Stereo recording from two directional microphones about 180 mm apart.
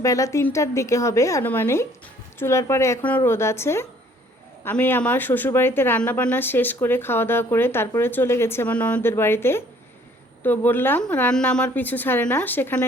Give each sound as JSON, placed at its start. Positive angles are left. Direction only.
{"t": 0.0, "sound": "speech", "side_deg": 20}